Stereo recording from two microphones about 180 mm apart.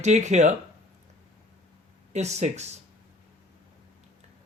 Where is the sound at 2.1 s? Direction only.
40° right (ahead or behind).